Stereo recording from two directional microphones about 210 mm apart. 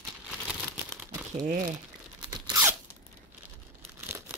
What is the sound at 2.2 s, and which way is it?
Crunch, 15° right (ahead or behind).